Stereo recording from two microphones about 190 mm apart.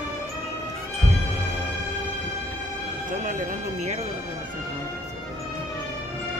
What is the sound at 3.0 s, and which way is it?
Speech, 45° right (ahead or behind).